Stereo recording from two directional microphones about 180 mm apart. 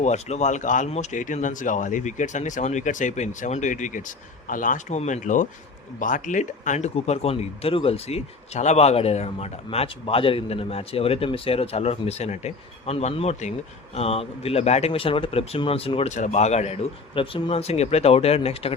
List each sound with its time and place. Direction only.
0.0 s speech: 40° left (ahead or behind)